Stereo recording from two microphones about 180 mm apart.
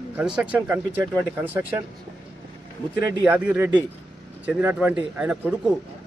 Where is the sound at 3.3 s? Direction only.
10° right (ahead or behind).